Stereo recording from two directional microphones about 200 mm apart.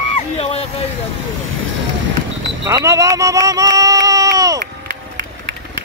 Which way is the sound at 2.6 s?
15° right (ahead or behind).